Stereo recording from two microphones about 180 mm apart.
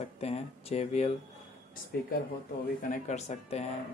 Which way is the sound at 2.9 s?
40° left (ahead or behind).